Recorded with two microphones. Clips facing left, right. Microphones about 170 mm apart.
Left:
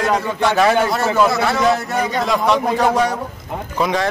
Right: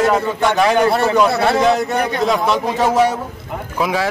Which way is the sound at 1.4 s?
30° right (ahead or behind).